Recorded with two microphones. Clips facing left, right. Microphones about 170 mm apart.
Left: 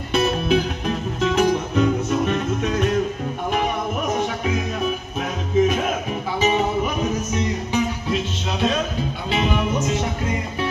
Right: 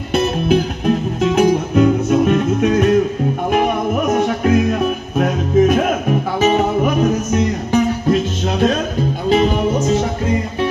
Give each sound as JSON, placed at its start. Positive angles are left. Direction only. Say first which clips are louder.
{"t": 0.1, "sound": "music", "louder": "right 4 dB", "side_deg": -55}
{"t": 4.1, "sound": "music", "louder": "right 9 dB", "side_deg": -60}